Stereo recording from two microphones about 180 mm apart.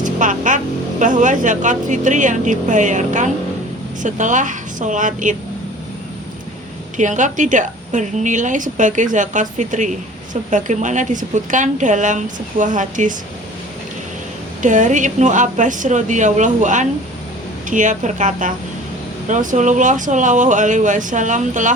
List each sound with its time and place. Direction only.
0.0 s speech: 45° right (ahead or behind)
6.9 s speech: 45° right (ahead or behind)
14.6 s speech: 45° right (ahead or behind)